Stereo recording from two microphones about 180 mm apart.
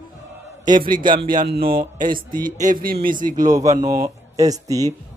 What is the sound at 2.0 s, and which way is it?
Speech, 50° right (ahead or behind).